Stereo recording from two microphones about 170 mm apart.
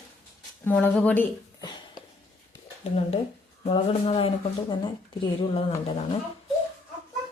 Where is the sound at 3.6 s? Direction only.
35° left (ahead or behind).